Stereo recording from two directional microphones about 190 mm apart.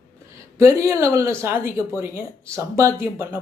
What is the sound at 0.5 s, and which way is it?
Speech, 15° right (ahead or behind).